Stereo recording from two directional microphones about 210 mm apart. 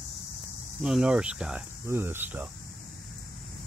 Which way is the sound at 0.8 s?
5° right (ahead or behind).